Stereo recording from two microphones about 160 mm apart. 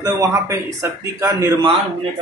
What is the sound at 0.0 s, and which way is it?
Speech, 15° right (ahead or behind).